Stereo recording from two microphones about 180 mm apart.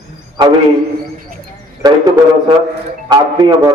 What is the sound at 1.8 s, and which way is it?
Speech, 25° right (ahead or behind).